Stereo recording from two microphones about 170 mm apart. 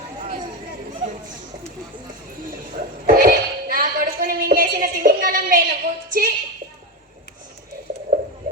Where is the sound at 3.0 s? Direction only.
55° right (ahead or behind).